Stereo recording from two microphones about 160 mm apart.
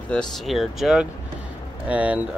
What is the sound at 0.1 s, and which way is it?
Speech, centre (ahead or behind).